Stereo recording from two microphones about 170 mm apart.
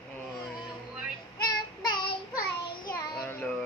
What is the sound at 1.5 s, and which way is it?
Child singing, 25° left (ahead or behind).